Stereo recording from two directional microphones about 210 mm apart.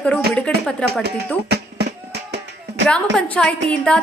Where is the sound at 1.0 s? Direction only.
50° right (ahead or behind).